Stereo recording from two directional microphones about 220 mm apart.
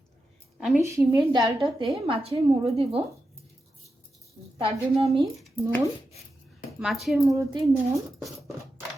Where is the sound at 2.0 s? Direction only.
25° right (ahead or behind).